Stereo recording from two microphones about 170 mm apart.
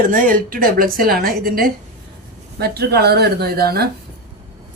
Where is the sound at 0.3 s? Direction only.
55° right (ahead or behind).